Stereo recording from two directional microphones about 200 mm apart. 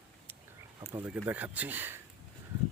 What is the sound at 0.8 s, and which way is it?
Speech, 15° right (ahead or behind).